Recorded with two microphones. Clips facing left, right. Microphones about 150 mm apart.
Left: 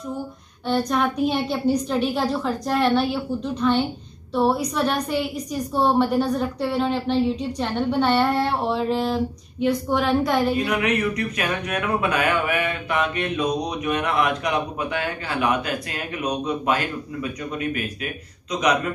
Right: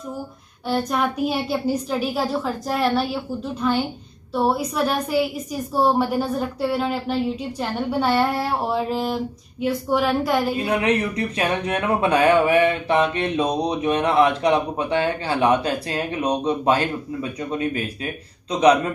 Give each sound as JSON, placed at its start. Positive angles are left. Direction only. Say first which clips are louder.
{"t": 0.7, "sound": "a woman's voice", "louder": "left 1 dB", "side_deg": -5}
{"t": 10.6, "sound": "speech", "louder": "right 1 dB", "side_deg": -30}